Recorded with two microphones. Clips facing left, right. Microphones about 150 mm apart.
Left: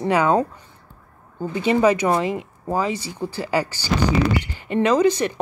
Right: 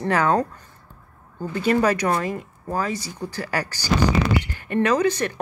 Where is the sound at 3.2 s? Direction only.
10° left (ahead or behind).